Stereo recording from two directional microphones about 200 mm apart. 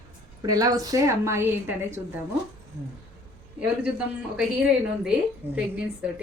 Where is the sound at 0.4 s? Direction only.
20° right (ahead or behind).